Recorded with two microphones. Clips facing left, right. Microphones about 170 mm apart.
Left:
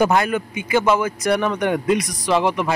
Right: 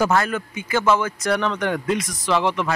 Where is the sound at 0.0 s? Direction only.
15° left (ahead or behind).